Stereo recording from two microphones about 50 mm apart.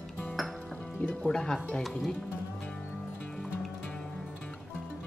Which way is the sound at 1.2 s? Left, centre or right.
Centre.